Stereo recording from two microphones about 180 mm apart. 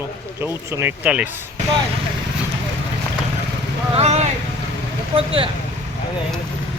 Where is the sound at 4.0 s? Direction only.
35° right (ahead or behind).